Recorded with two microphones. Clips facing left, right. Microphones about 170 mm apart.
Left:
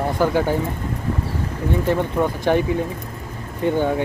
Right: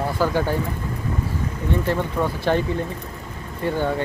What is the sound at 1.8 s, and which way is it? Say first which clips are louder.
Speech: left 5 dB; 15° left (ahead or behind).